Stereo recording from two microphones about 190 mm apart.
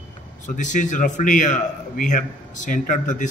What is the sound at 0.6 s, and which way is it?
A man's voice, 40° left (ahead or behind).